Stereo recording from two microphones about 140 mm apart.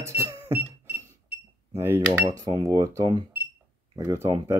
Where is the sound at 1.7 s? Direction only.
20° right (ahead or behind).